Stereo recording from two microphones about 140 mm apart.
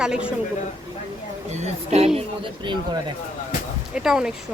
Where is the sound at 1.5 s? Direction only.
45° right (ahead or behind).